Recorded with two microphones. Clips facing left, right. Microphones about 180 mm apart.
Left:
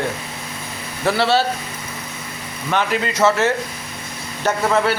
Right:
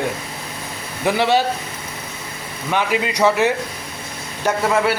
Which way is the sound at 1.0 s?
15° right (ahead or behind).